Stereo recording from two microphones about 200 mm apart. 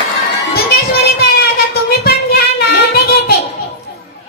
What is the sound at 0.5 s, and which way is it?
Child singing, 50° left (ahead or behind).